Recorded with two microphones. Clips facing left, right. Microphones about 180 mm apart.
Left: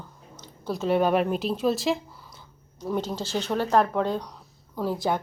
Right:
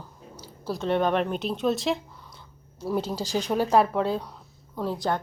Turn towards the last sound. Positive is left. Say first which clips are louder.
# left 1 dB
turn(degrees=0)  # may be behind; listen again after turning